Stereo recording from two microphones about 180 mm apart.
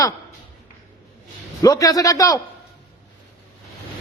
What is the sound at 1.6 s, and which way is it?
Speech, 20° left (ahead or behind).